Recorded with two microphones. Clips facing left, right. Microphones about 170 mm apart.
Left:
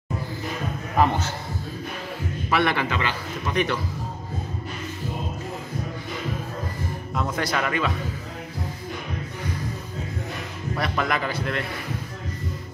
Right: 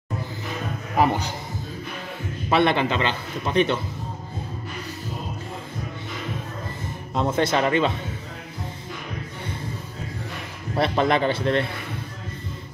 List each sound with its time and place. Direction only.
0.9 s a man's voice: 15° right (ahead or behind)
2.5 s a man's voice: 25° right (ahead or behind)
7.2 s a man's voice: 25° right (ahead or behind)
10.8 s a man's voice: 25° right (ahead or behind)